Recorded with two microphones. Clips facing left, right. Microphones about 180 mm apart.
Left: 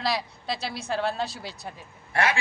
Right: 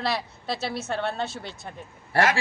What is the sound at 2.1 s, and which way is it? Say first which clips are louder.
Speech: right 3 dB; 45° right (ahead or behind).